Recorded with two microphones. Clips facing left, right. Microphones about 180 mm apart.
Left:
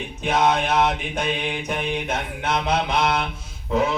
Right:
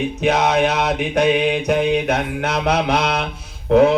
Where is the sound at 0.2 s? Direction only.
75° right (ahead or behind).